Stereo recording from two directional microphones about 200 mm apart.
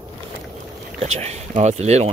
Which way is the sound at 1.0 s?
35° right (ahead or behind).